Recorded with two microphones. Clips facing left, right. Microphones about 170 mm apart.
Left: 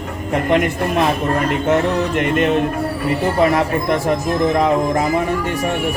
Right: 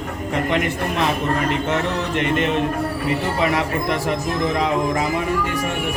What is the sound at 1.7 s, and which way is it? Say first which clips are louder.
Music: left 6 dB; 50° left (ahead or behind).